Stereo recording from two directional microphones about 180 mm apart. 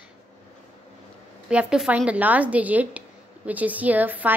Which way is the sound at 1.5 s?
5° right (ahead or behind).